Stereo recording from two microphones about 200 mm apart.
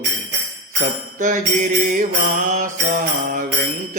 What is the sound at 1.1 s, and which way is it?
Mantra, 40° right (ahead or behind).